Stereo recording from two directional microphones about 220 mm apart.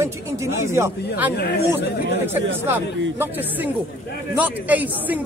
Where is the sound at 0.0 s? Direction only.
10° right (ahead or behind).